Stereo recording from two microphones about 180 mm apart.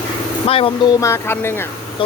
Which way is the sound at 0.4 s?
30° left (ahead or behind).